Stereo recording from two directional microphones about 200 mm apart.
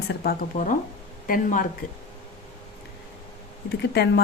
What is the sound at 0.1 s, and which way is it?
Speech, 50° left (ahead or behind).